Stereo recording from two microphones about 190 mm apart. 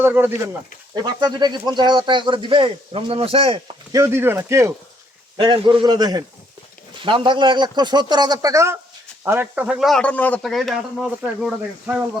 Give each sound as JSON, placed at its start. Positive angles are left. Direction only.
{"t": 0.0, "sound": "speech", "side_deg": -10}
{"t": 0.9, "sound": "speech", "side_deg": -20}
{"t": 3.9, "sound": "speech", "side_deg": -15}
{"t": 5.4, "sound": "speech", "side_deg": -25}